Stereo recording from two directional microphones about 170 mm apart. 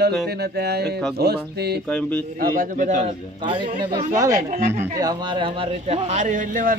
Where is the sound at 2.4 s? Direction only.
55° right (ahead or behind).